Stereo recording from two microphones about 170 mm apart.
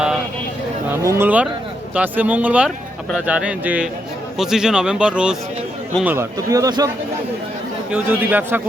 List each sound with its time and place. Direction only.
0.9 s speech: 15° right (ahead or behind)
6.1 s speech: 15° right (ahead or behind)
7.9 s speech: 10° right (ahead or behind)